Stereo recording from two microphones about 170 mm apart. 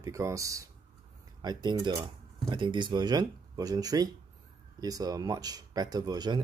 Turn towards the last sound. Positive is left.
turn(degrees=-25)  # may be behind; listen again after turning